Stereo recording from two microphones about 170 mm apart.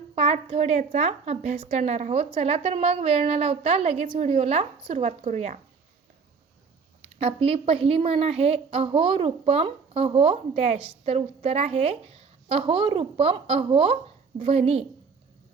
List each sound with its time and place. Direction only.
0.2 s a woman's voice: 35° right (ahead or behind)
7.2 s a woman's voice: 35° right (ahead or behind)